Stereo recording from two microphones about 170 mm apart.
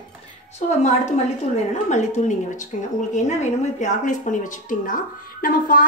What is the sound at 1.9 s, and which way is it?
A woman's voice, 45° left (ahead or behind).